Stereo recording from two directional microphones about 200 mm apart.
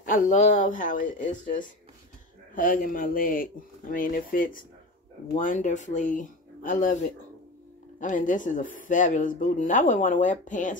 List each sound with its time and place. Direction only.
0.0 s speech: 40° left (ahead or behind)